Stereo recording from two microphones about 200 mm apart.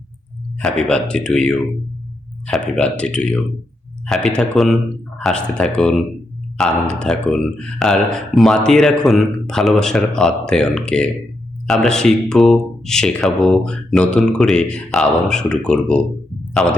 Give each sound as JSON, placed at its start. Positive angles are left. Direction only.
{"t": 0.6, "sound": "speech", "side_deg": 5}
{"t": 2.7, "sound": "speech", "side_deg": 5}